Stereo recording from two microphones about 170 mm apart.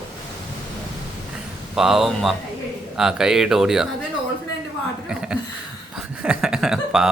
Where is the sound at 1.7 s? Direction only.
Centre (ahead or behind).